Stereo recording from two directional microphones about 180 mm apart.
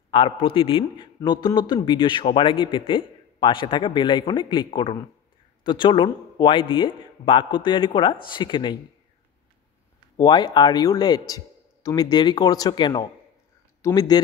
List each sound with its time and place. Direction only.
0.1 s a man's voice: 30° left (ahead or behind)
10.1 s a man's voice: 25° left (ahead or behind)